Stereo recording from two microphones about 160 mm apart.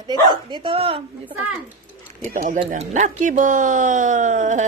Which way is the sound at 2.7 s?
50° right (ahead or behind).